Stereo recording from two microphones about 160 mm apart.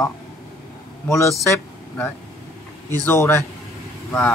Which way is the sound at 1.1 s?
20° left (ahead or behind).